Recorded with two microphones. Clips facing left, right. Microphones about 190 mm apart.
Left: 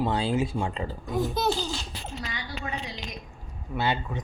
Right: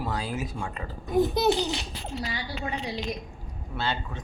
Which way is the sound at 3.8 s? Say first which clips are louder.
Left 3 dB; 15° left (ahead or behind).